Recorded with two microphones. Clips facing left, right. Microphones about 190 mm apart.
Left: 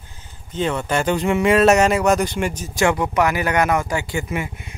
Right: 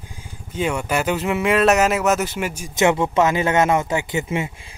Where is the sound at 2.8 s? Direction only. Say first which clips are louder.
Right 1 dB; 25° right (ahead or behind).